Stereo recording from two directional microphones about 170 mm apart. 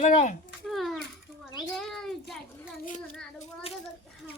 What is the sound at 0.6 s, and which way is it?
Speech, centre (ahead or behind).